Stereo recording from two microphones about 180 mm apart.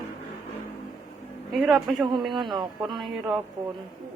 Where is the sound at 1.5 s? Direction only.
Centre (ahead or behind).